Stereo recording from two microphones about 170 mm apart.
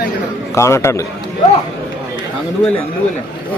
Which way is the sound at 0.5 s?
15° left (ahead or behind).